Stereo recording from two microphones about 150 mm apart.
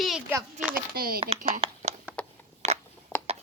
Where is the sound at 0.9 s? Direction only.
80° right.